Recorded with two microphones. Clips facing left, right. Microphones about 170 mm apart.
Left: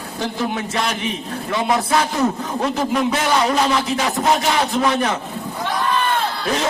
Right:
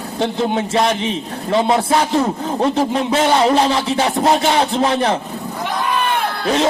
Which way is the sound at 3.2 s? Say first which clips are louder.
Right 4 dB; 30° right (ahead or behind).